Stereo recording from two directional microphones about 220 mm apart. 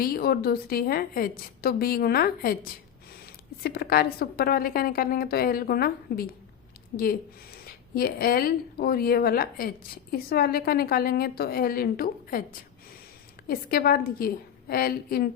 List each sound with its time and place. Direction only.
0.0 s a woman's voice: 45° left (ahead or behind)
13.5 s a woman's voice: 40° left (ahead or behind)